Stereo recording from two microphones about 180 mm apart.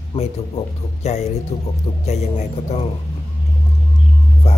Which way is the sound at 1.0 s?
35° left (ahead or behind).